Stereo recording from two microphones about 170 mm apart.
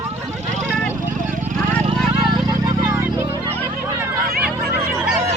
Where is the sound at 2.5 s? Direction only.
15° right (ahead or behind).